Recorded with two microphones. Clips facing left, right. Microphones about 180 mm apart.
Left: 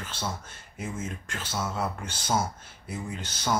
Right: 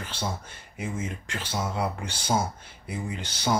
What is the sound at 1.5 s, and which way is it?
Speech, 10° right (ahead or behind).